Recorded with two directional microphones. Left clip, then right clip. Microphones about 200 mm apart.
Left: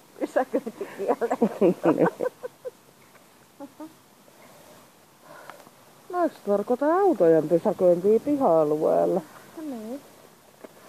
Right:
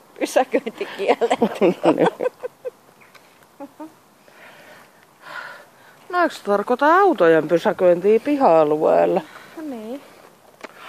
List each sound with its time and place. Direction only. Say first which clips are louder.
0.2 s speech: right 7 dB; 75° right (ahead or behind)
1.5 s speech: right 4 dB; 40° right (ahead or behind)
1.8 s speech: right 5 dB; 75° right (ahead or behind)
6.1 s speech: right 6 dB; 30° right (ahead or behind)
8.4 s speech: right 6 dB; 40° right (ahead or behind)
9.6 s a sound: right 4 dB; 75° right (ahead or behind)